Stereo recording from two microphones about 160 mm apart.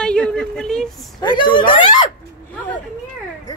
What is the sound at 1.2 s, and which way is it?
Speech, 30° left (ahead or behind).